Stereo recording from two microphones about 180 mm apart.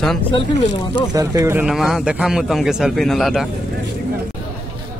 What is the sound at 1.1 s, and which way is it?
Speech, 20° right (ahead or behind).